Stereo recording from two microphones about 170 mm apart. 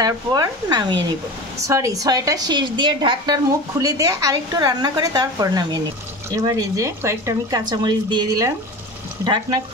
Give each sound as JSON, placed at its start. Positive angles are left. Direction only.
{"t": 0.0, "sound": "speech", "side_deg": -20}